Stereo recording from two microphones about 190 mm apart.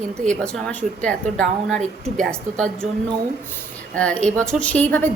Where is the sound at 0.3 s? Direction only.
5° left (ahead or behind).